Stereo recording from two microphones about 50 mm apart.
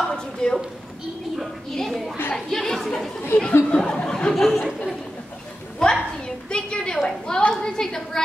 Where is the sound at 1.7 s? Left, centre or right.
Centre.